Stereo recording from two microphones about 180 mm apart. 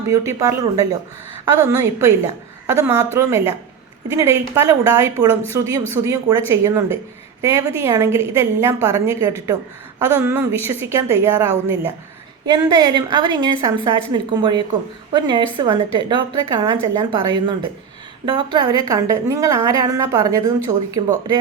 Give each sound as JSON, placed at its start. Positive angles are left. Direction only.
{"t": 0.1, "sound": "a woman's voice", "side_deg": -15}